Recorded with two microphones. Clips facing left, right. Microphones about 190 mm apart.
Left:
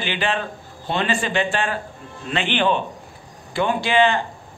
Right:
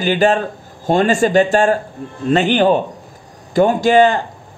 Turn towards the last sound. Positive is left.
turn(degrees=-45)  # may be behind; listen again after turning